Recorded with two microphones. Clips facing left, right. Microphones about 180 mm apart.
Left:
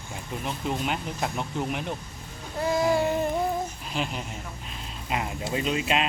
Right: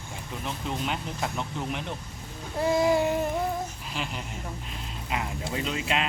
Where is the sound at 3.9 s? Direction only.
20° left (ahead or behind).